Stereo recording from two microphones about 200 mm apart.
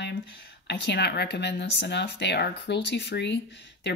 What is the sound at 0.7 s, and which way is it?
Speech, 55° left (ahead or behind).